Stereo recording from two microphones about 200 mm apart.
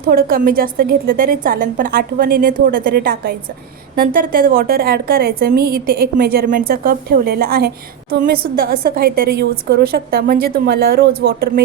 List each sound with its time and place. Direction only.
0.1 s a woman's voice: 45° right (ahead or behind)